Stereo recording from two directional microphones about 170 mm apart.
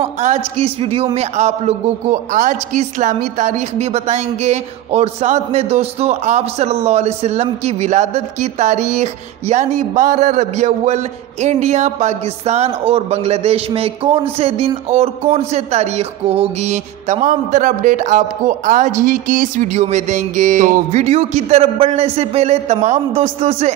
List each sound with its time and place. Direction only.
0.0 s a woman's voice: 40° right (ahead or behind)